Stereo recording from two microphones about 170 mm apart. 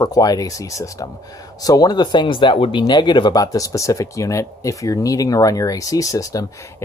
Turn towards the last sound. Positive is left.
turn(degrees=20)  # may be behind; listen again after turning